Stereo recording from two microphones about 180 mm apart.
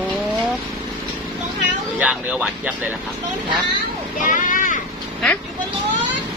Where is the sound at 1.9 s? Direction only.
5° right (ahead or behind).